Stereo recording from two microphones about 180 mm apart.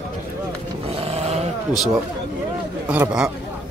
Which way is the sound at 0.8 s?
30° right (ahead or behind).